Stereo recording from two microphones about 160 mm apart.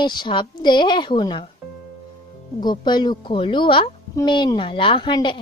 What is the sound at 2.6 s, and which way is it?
A child's voice, 25° left (ahead or behind).